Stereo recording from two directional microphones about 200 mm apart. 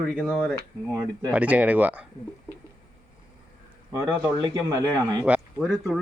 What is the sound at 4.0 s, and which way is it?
Speech, 10° right (ahead or behind).